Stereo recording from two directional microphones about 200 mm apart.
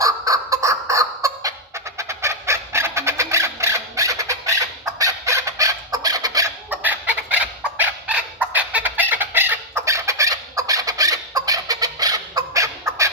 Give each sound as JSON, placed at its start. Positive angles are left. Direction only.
{"t": 0.0, "sound": "fowl", "side_deg": -15}
{"t": 2.0, "sound": "chicken", "side_deg": -15}
{"t": 8.5, "sound": "fowl", "side_deg": -10}